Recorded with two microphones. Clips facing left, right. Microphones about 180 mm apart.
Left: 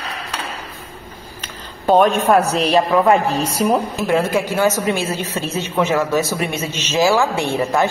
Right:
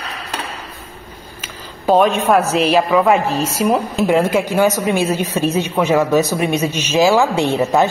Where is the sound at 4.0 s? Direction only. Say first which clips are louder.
Right 3 dB; 20° right (ahead or behind).